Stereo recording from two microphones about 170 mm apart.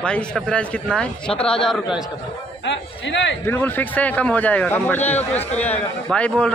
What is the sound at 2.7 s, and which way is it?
Speech, 90° left.